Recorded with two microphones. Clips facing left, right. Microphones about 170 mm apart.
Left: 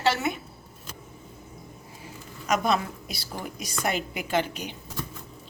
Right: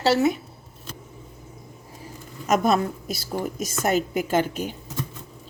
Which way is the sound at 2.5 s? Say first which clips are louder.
Right 4 dB; 45° right (ahead or behind).